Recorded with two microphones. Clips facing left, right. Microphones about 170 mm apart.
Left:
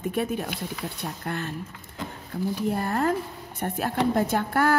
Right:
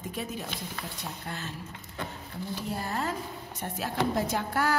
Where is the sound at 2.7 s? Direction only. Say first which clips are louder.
Left 5 dB; 55° left (ahead or behind).